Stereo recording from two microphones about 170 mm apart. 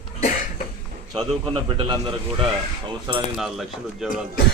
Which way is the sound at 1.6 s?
30° right (ahead or behind).